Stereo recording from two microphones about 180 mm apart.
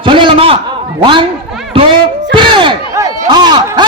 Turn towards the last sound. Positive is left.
turn(degrees=-25)  # may be behind; listen again after turning